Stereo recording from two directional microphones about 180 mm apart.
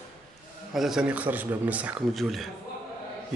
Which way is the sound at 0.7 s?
Centre (ahead or behind).